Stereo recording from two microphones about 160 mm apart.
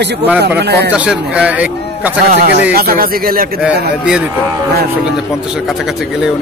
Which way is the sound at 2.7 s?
70° right (ahead or behind).